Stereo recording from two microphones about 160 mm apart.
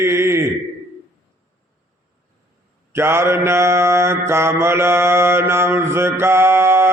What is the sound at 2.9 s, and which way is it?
Mantra, 15° right (ahead or behind).